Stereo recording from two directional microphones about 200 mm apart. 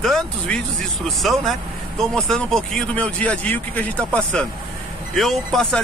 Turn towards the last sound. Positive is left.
turn(degrees=0)  # may be behind; listen again after turning